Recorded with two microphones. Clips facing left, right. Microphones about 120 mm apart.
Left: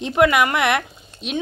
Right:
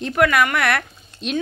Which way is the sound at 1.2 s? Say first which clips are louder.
Right 2 dB; 5° left (ahead or behind).